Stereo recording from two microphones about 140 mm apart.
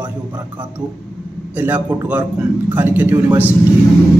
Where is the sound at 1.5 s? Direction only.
10° right (ahead or behind).